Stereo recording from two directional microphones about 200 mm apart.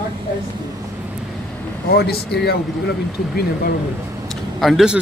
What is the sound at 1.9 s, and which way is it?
Speech, 55° left (ahead or behind).